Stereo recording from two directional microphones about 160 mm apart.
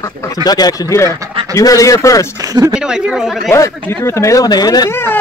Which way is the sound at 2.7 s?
5° right (ahead or behind).